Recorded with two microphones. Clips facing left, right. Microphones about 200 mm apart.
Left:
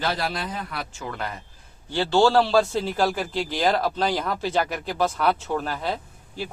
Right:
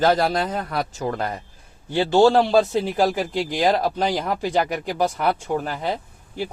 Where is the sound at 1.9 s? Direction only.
20° right (ahead or behind).